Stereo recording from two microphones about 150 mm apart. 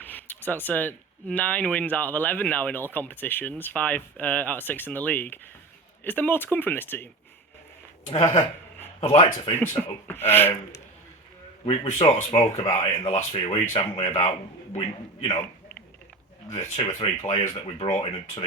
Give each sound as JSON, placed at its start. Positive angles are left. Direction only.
{"t": 0.0, "sound": "speech", "side_deg": 10}
{"t": 8.1, "sound": "speech", "side_deg": 50}
{"t": 9.8, "sound": "speech", "side_deg": 5}
{"t": 10.2, "sound": "speech", "side_deg": 15}
{"t": 11.6, "sound": "speech", "side_deg": 35}
{"t": 16.5, "sound": "speech", "side_deg": 50}